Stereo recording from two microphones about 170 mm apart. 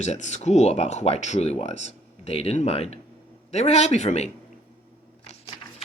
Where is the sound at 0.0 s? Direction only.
40° left (ahead or behind).